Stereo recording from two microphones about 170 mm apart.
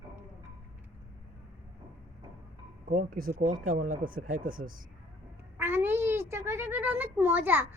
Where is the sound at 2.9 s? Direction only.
55° right (ahead or behind).